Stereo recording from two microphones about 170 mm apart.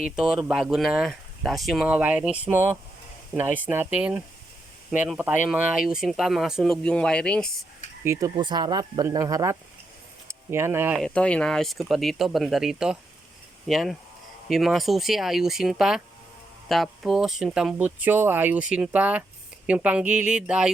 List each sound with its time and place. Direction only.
0.0 s speech: 5° right (ahead or behind)
8.0 s speech: 20° right (ahead or behind)
10.9 s speech: 5° left (ahead or behind)